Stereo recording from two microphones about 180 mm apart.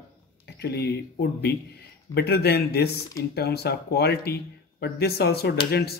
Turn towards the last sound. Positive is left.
turn(degrees=60)  # may be behind; listen again after turning